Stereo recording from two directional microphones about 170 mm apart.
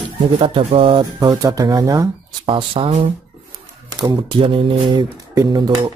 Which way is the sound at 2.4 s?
30° right (ahead or behind).